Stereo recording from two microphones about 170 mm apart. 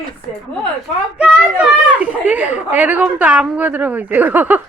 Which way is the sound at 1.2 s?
5° right (ahead or behind).